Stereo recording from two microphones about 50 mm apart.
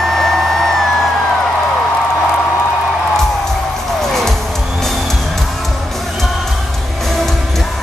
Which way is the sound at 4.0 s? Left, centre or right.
Centre.